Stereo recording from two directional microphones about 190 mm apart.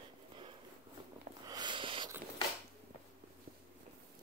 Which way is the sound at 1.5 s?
25° right (ahead or behind).